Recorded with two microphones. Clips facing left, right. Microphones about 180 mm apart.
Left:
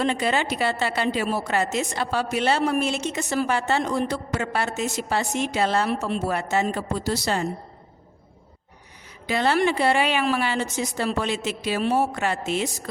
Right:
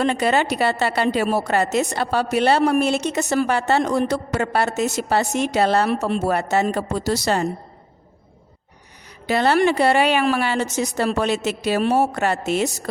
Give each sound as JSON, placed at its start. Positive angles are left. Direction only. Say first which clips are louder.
{"t": 0.0, "sound": "a woman's voice", "louder": "right 4 dB", "side_deg": -65}
{"t": 6.6, "sound": "speech", "louder": "right 4 dB", "side_deg": -75}
{"t": 9.2, "sound": "a woman's voice", "louder": "right 4 dB", "side_deg": -65}